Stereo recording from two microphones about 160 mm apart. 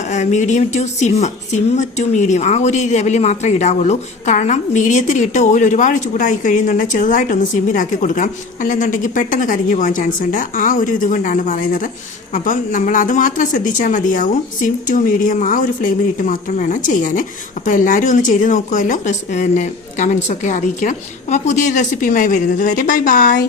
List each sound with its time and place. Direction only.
0.0 s a woman's voice: 50° left (ahead or behind)